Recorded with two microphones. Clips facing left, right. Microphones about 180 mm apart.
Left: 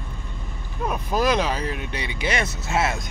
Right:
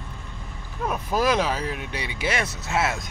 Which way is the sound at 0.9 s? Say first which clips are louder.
Left 1 dB; 5° right (ahead or behind).